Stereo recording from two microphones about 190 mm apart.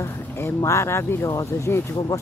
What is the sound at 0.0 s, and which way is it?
Speech, 15° left (ahead or behind).